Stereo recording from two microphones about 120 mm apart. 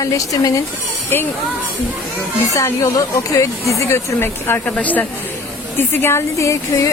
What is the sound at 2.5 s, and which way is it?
Speech, 25° left (ahead or behind).